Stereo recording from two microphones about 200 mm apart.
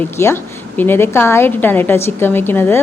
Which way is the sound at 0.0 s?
15° left (ahead or behind).